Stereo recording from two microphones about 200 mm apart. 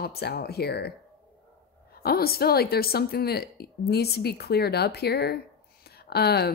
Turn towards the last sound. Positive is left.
turn(degrees=55)  # may be behind; listen again after turning